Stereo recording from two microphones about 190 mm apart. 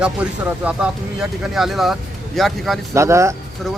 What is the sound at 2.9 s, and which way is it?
Speech, 15° right (ahead or behind).